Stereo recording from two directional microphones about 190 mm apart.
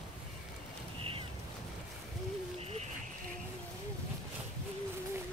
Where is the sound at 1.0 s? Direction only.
30° right (ahead or behind).